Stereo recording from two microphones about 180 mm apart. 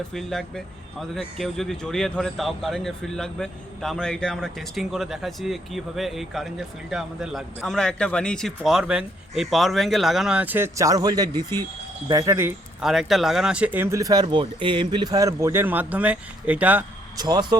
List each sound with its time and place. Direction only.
0.1 s speech: centre (ahead or behind); by 12.5 s 15° right (ahead or behind)
12.8 s speech: centre (ahead or behind)
17.2 s speech: 20° right (ahead or behind)